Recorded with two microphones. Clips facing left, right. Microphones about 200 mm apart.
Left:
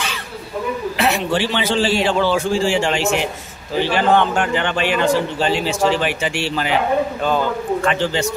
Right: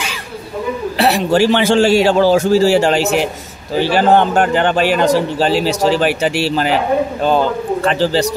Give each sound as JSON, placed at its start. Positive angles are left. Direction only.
{"t": 0.9, "sound": "a man's voice", "side_deg": -35}